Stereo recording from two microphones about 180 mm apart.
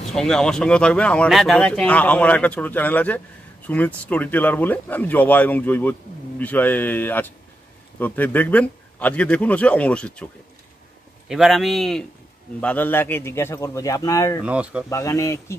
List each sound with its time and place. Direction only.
0.1 s a man's voice: 5° left (ahead or behind); by 14.4 s 20° left (ahead or behind)
14.4 s speech: 5° right (ahead or behind)
14.9 s speech: 15° left (ahead or behind)